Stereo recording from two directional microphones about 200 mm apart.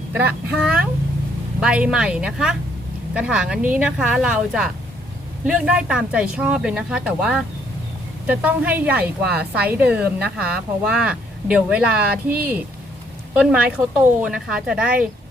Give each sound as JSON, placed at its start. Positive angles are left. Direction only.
{"t": 0.1, "sound": "a woman's voice", "side_deg": -10}
{"t": 13.3, "sound": "speech", "side_deg": -5}